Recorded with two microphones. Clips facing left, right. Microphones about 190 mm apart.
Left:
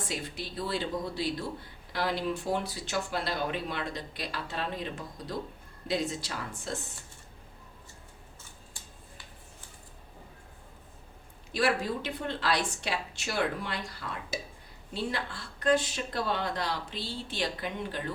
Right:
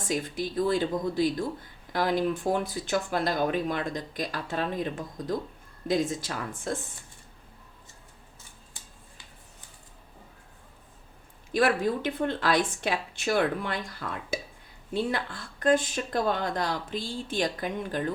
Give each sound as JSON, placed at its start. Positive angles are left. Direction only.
{"t": 0.1, "sound": "speech", "side_deg": -45}
{"t": 11.5, "sound": "speech", "side_deg": -50}